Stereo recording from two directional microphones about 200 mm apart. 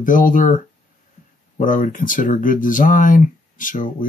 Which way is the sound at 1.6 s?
40° left (ahead or behind).